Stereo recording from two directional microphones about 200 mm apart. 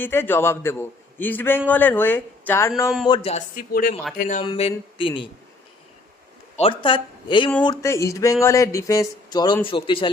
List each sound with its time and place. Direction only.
0.0 s a man's voice: 10° left (ahead or behind)
3.1 s speech: 35° left (ahead or behind)
4.4 s speech: 30° left (ahead or behind)
6.6 s a man's voice: 25° left (ahead or behind)